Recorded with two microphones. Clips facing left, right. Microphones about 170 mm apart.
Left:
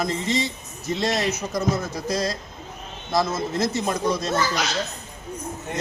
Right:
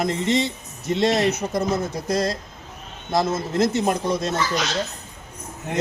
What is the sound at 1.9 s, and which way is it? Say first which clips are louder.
Speech: right 2 dB; 55° right (ahead or behind).